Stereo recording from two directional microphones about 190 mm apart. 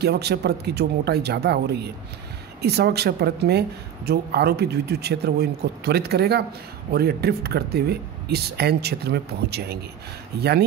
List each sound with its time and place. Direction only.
0.0 s a woman's voice: 60° right (ahead or behind)